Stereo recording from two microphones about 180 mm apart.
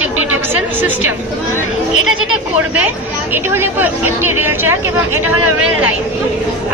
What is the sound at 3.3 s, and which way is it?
Speech, 10° right (ahead or behind).